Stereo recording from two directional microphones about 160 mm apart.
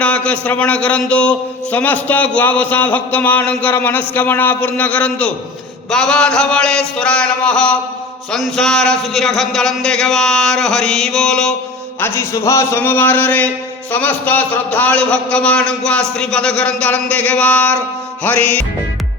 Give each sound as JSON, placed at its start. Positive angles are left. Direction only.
{"t": 0.0, "sound": "a man's voice", "side_deg": 10}
{"t": 11.9, "sound": "a man's voice", "side_deg": 15}